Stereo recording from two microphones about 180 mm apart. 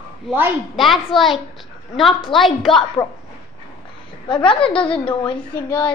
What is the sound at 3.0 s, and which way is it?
Speech, 20° left (ahead or behind).